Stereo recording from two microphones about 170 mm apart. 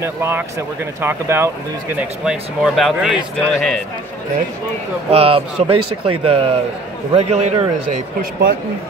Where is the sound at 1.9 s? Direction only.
Centre (ahead or behind).